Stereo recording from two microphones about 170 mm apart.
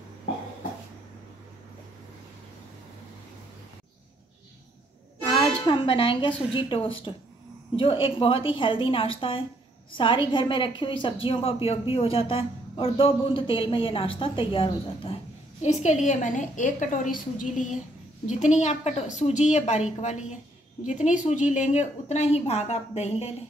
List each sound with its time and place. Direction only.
5.2 s a woman's voice: 30° left (ahead or behind)
15.6 s a woman's voice: 45° left (ahead or behind)